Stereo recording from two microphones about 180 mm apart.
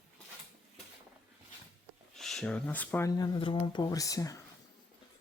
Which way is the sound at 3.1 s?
20° left (ahead or behind).